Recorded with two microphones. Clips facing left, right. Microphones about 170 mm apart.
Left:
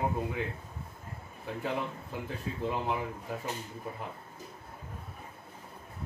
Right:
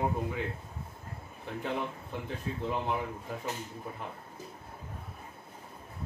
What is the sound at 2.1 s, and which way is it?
Speech, 5° left (ahead or behind).